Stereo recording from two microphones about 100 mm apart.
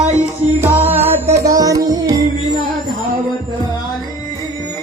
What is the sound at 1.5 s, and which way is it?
Music, 35° right (ahead or behind).